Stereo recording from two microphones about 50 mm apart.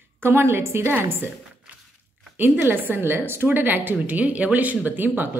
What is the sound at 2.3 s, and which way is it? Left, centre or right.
A woman's voice, right.